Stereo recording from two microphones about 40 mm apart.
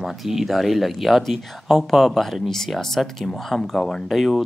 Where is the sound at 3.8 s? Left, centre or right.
Centre.